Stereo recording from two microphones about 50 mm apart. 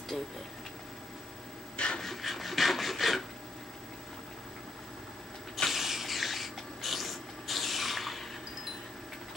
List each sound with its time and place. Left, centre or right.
0.1 s vehicle: centre
1.8 s rub: centre
2.0 s rub: centre
5.7 s a sound: centre